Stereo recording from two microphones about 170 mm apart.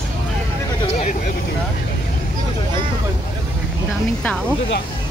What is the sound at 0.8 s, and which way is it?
Vehicle, 40° left (ahead or behind).